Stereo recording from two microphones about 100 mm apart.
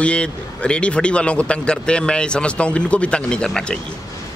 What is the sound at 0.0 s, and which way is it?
Speech, 10° left (ahead or behind).